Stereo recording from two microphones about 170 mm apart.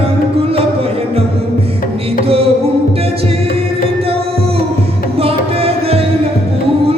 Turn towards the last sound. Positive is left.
turn(degrees=-35)  # may be behind; listen again after turning